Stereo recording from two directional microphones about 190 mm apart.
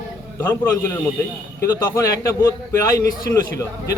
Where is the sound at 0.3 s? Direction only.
10° left (ahead or behind).